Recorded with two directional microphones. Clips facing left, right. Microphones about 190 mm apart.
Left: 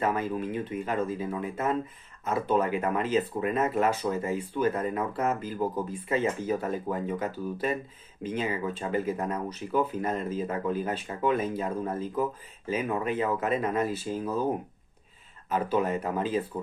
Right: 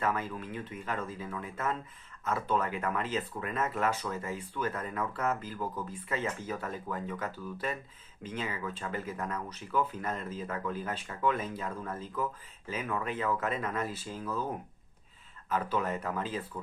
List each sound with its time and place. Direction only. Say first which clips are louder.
0.0 s speech: left 5 dB; 20° left (ahead or behind)
15.4 s speech: left 5 dB; 20° left (ahead or behind)